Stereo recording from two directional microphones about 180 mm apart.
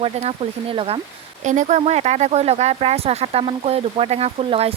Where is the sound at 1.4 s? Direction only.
45° right (ahead or behind).